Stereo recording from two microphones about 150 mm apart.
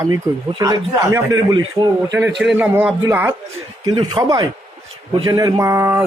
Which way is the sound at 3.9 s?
30° right (ahead or behind).